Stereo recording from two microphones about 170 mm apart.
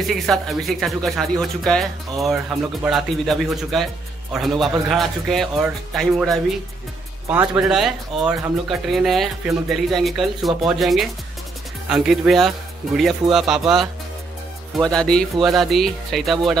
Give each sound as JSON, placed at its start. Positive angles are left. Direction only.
{"t": 0.1, "sound": "speech", "side_deg": 0}
{"t": 7.2, "sound": "speech", "side_deg": -10}